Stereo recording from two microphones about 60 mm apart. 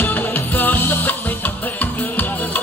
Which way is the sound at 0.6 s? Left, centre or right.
Left.